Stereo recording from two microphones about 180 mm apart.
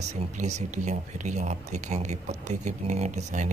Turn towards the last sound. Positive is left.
turn(degrees=-40)  # may be behind; listen again after turning